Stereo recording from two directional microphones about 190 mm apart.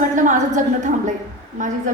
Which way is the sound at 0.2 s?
40° right (ahead or behind).